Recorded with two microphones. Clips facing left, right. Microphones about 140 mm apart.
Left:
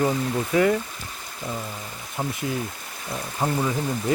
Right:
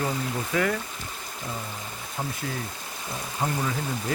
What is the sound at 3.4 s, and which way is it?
Speech, 25° left (ahead or behind).